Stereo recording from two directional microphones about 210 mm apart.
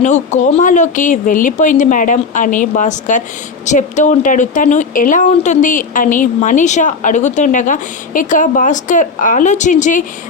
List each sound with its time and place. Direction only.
0.0 s speech: 35° left (ahead or behind)